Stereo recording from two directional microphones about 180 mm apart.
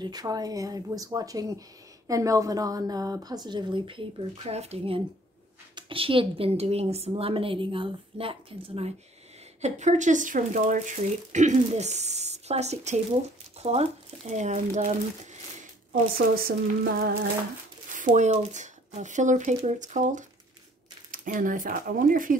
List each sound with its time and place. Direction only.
0.0 s a woman's voice: 20° right (ahead or behind); by 15.0 s 40° right (ahead or behind)
15.9 s speech: 55° right (ahead or behind)
17.0 s humming: 60° right (ahead or behind)
17.9 s speech: 45° right (ahead or behind)